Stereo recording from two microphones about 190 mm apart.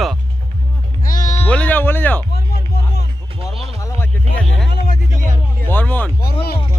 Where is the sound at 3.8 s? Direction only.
15° left (ahead or behind).